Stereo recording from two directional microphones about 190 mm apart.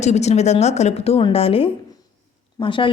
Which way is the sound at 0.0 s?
35° left (ahead or behind).